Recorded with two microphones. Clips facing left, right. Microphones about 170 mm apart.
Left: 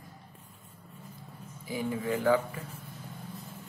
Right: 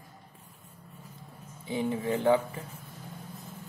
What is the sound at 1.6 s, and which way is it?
Speech, 30° right (ahead or behind).